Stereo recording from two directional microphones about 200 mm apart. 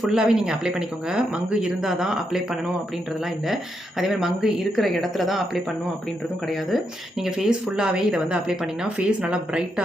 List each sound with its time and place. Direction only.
0.0 s speech: 5° right (ahead or behind)